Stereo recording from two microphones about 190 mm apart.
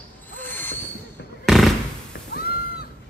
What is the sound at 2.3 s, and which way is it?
Music, 55° left (ahead or behind).